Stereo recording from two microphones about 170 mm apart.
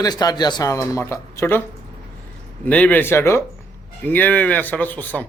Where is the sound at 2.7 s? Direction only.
10° left (ahead or behind).